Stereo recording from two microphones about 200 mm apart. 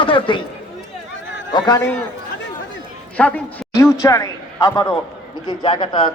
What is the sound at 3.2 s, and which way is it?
A woman's voice, 5° left (ahead or behind).